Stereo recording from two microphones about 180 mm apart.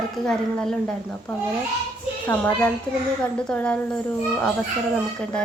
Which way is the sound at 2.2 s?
10° left (ahead or behind).